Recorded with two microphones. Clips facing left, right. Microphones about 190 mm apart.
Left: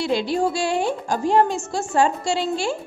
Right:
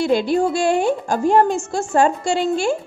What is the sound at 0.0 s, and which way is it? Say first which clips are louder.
A woman's voice: right 4 dB; 50° right (ahead or behind).